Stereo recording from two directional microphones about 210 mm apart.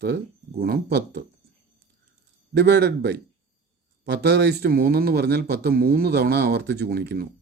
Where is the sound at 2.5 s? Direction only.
50° right (ahead or behind).